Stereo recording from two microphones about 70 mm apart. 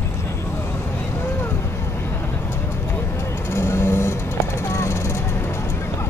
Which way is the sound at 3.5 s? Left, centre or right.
Left.